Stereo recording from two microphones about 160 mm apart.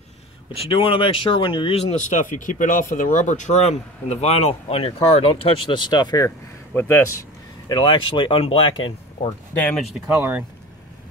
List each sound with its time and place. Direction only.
0.5 s speech: 35° left (ahead or behind); by 7.0 s 15° left (ahead or behind)
7.6 s speech: 30° left (ahead or behind)
10.1 s speech: 10° right (ahead or behind)